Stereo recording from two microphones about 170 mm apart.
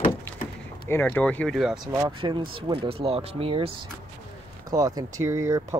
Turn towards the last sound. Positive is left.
turn(degrees=-15)  # may be behind; listen again after turning